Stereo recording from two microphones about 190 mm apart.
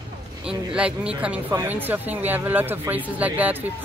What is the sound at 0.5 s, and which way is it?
Speech, 5° right (ahead or behind).